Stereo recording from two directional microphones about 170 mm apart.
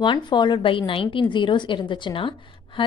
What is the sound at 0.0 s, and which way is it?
Speech, 25° left (ahead or behind).